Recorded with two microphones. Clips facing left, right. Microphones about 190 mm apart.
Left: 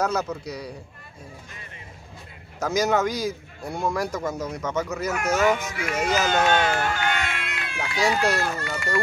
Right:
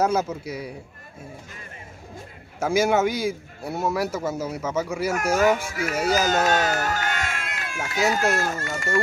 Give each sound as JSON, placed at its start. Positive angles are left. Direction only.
{"t": 0.0, "sound": "a man's voice", "side_deg": -10}
{"t": 2.6, "sound": "a man's voice", "side_deg": -10}
{"t": 5.4, "sound": "speech", "side_deg": -40}